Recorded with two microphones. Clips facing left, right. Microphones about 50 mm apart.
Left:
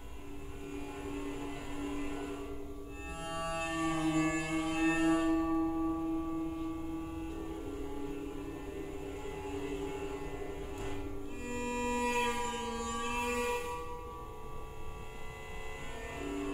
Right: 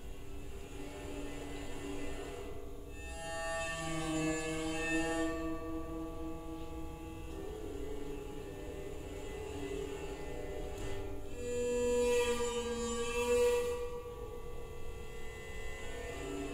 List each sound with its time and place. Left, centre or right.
1.0 s music: left
5.4 s music: centre
9.3 s a sound: left
10.2 s music: left
11.4 s music: left
16.2 s music: left